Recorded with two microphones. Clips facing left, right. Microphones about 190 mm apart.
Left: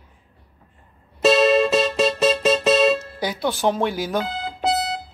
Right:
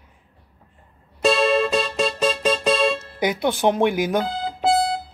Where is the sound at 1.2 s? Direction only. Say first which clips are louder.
Left 3 dB; 5° left (ahead or behind).